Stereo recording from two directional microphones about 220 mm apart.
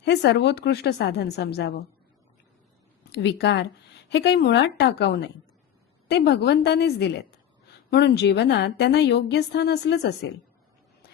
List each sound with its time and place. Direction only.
0.0 s a woman's voice: 50° left (ahead or behind)
3.1 s a woman's voice: 50° left (ahead or behind)